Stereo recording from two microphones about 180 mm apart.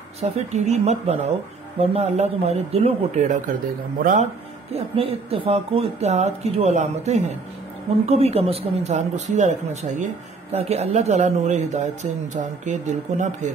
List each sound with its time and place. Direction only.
0.2 s speech: 40° right (ahead or behind)
4.7 s speech: 35° right (ahead or behind)